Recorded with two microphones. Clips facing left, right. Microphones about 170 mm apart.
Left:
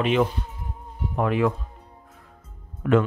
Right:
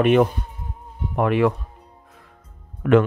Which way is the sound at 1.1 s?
70° right (ahead or behind).